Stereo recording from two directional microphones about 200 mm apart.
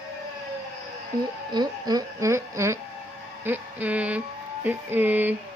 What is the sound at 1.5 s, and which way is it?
Speech, 20° right (ahead or behind).